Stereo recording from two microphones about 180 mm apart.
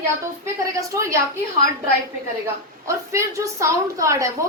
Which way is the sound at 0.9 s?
15° right (ahead or behind).